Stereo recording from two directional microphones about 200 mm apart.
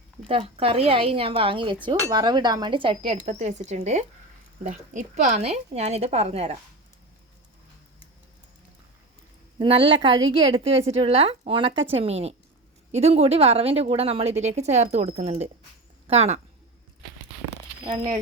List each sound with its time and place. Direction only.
0.3 s a woman's voice: 30° right (ahead or behind)
9.6 s a woman's voice: 25° right (ahead or behind)